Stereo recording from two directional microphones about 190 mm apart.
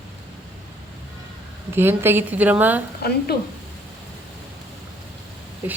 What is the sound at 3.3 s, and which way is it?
Speech, 55° left (ahead or behind).